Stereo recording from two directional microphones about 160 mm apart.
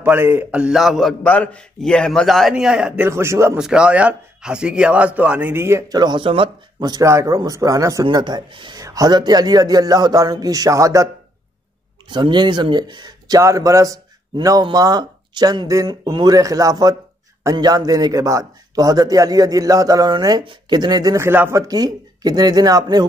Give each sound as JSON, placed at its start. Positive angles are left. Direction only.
{"t": 0.0, "sound": "a man's voice", "side_deg": -15}
{"t": 3.1, "sound": "speech", "side_deg": -15}
{"t": 3.5, "sound": "a man's voice", "side_deg": -5}
{"t": 12.1, "sound": "a man's voice", "side_deg": -30}